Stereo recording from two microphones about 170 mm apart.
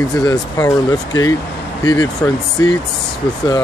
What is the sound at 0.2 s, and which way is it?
Speech, 25° left (ahead or behind).